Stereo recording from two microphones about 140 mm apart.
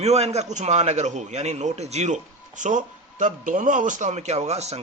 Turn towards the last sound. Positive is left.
turn(degrees=-50)  # may be behind; listen again after turning